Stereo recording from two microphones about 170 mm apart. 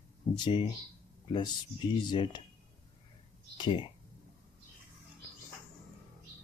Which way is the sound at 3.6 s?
30° left (ahead or behind).